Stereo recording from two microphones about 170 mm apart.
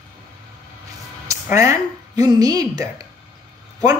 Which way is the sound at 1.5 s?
20° right (ahead or behind).